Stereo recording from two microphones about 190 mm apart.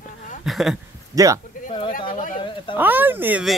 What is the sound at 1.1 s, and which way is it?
Speech, 15° right (ahead or behind).